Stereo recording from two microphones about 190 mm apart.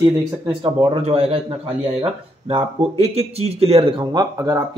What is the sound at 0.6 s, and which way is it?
Speech, 30° right (ahead or behind).